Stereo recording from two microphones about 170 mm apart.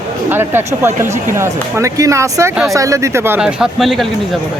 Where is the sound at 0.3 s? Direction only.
15° right (ahead or behind).